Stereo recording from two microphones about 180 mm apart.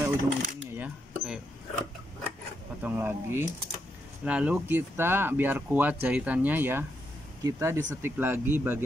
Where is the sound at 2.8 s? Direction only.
10° right (ahead or behind).